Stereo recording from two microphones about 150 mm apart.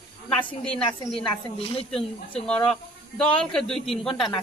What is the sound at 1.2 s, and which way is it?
Speech, 40° left (ahead or behind).